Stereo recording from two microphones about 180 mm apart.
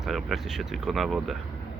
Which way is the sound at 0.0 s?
Centre (ahead or behind).